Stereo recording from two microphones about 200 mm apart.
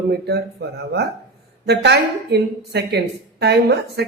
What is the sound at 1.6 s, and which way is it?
A woman's voice, 55° right (ahead or behind).